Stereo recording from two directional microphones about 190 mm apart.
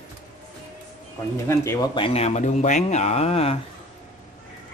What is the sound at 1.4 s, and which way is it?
Speech, 15° left (ahead or behind).